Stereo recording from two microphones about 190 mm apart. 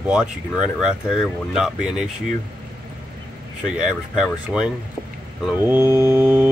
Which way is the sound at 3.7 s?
5° right (ahead or behind).